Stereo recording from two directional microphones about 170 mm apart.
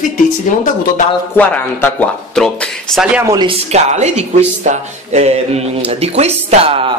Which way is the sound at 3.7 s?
40° right (ahead or behind).